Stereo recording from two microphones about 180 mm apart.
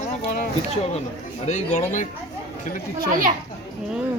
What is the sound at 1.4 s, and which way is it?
Speech, 40° left (ahead or behind).